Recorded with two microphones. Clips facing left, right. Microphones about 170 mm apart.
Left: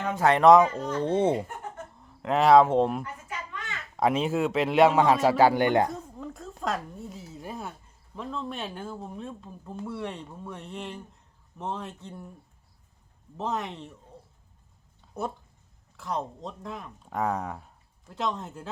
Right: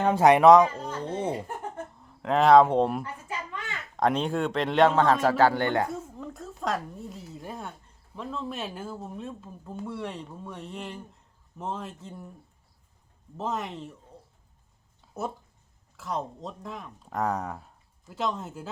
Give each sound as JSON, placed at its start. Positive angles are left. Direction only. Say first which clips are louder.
{"t": 0.2, "sound": "speech", "louder": "right 3 dB", "side_deg": -15}
{"t": 0.4, "sound": "speech", "louder": "left 1 dB", "side_deg": 0}
{"t": 0.9, "sound": "speech", "louder": "left 6 dB", "side_deg": 30}
{"t": 2.2, "sound": "speech", "louder": "right 1 dB", "side_deg": 0}
{"t": 3.0, "sound": "children playing", "louder": "right 2 dB", "side_deg": -30}
{"t": 3.9, "sound": "a man's voice", "louder": "left 1 dB", "side_deg": 5}
{"t": 5.9, "sound": "a sound", "louder": "right 1 dB", "side_deg": 0}
{"t": 8.1, "sound": "speech", "louder": "even", "side_deg": 0}
{"t": 13.3, "sound": "speech", "louder": "even", "side_deg": 0}
{"t": 15.0, "sound": "a sound", "louder": "even", "side_deg": 0}
{"t": 16.0, "sound": "speech", "louder": "even", "side_deg": 0}